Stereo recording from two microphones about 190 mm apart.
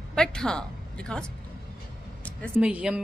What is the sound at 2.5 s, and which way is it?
Speech, 5° right (ahead or behind).